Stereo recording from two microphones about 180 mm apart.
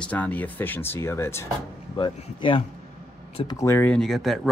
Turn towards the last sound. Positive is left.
turn(degrees=0)  # may be behind; listen again after turning